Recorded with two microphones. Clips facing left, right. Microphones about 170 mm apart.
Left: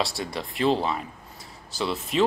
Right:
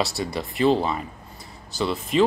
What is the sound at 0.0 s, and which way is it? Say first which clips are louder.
Speech: right 3 dB; centre (ahead or behind).